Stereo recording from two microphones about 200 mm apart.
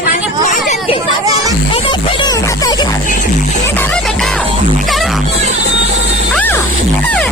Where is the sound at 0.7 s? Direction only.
25° left (ahead or behind).